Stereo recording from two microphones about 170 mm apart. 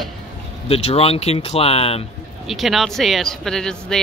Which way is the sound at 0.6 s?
35° left (ahead or behind).